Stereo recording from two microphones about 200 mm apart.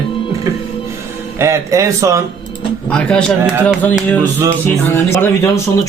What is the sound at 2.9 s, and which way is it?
Speech, 5° left (ahead or behind).